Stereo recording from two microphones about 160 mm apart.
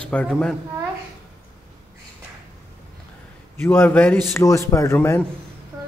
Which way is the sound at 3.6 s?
10° left (ahead or behind).